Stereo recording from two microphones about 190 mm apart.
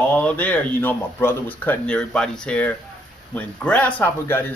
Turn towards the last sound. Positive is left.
turn(degrees=10)  # may be behind; listen again after turning